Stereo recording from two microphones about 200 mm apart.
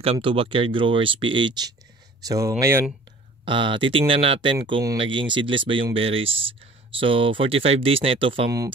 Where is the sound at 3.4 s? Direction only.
25° right (ahead or behind).